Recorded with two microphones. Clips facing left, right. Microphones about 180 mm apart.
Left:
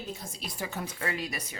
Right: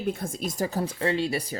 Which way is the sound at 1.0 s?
30° right (ahead or behind).